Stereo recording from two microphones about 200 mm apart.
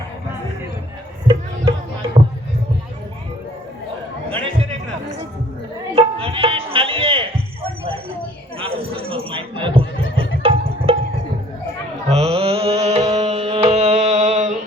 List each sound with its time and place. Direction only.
1.3 s music: 25° right (ahead or behind)
5.9 s music: 25° right (ahead or behind)
8.5 s neigh: 25° right (ahead or behind)
10.4 s music: 30° right (ahead or behind)
12.0 s carnatic music: 30° right (ahead or behind)